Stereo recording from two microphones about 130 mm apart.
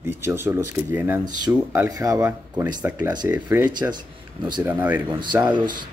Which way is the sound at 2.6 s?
10° right (ahead or behind).